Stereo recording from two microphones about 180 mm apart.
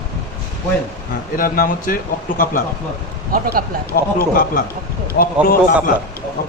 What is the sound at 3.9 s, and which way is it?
A man's voice, 55° left (ahead or behind).